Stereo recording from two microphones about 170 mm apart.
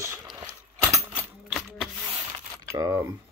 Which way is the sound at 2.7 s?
20° right (ahead or behind).